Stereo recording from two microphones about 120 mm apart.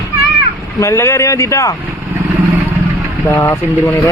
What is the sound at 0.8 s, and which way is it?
Speech, 25° left (ahead or behind).